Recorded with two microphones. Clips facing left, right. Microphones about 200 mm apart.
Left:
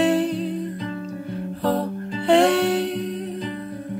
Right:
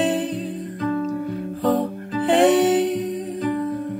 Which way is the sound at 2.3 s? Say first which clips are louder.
Right 1 dB; 15° right (ahead or behind).